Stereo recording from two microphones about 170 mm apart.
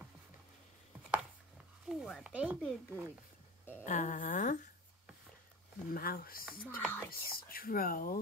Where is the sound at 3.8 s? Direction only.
45° left (ahead or behind).